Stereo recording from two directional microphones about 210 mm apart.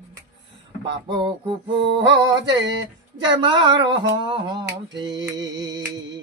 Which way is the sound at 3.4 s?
20° right (ahead or behind).